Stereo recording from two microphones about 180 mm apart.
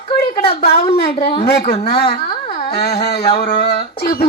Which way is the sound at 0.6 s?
60° left (ahead or behind).